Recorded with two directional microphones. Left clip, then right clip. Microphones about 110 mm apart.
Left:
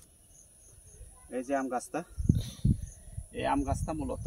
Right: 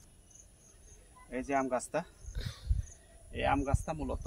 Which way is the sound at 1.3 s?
60° right (ahead or behind).